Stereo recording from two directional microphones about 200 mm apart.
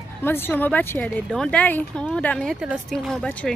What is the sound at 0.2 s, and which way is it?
A woman's voice, 10° left (ahead or behind).